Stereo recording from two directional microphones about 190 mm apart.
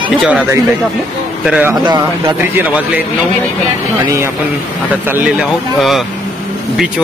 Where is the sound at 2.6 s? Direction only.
10° right (ahead or behind).